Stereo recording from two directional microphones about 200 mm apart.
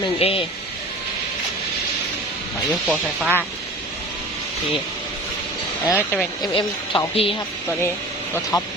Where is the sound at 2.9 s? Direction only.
5° right (ahead or behind).